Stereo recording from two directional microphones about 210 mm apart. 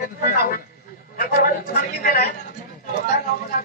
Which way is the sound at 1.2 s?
45° left (ahead or behind).